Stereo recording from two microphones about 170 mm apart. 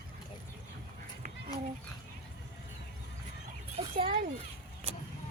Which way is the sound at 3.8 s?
30° right (ahead or behind).